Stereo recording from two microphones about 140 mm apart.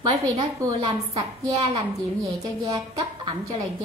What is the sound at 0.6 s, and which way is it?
A woman's voice, 30° right (ahead or behind).